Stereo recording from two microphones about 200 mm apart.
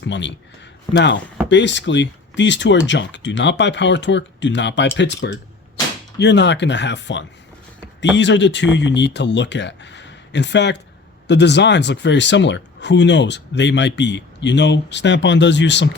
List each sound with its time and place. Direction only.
0.0 s speech: 65° left (ahead or behind)